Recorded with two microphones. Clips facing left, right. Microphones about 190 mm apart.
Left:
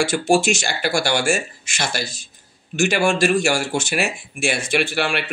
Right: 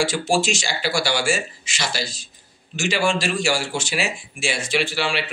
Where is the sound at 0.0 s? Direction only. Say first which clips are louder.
Left 3 dB; 55° left (ahead or behind).